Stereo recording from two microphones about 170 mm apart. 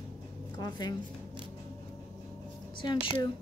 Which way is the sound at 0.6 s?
25° left (ahead or behind).